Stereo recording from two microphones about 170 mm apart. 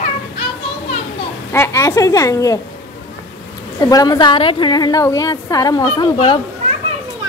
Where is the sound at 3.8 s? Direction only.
25° left (ahead or behind).